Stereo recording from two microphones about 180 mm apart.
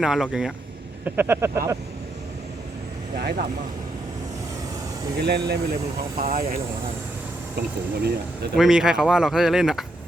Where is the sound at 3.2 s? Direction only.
65° right (ahead or behind).